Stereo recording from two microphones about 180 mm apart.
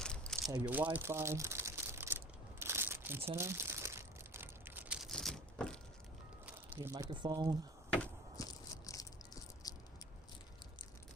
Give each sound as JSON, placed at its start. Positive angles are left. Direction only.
{"t": 0.0, "sound": "a sound", "side_deg": 5}
{"t": 0.5, "sound": "speech", "side_deg": -10}
{"t": 0.9, "sound": "crumpling", "side_deg": -15}
{"t": 6.4, "sound": "a sound", "side_deg": -10}
{"t": 6.9, "sound": "speech", "side_deg": -25}
{"t": 8.4, "sound": "biting", "side_deg": 20}